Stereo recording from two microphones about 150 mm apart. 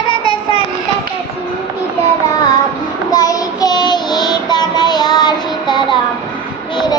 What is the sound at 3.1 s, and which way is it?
Child singing, 25° left (ahead or behind).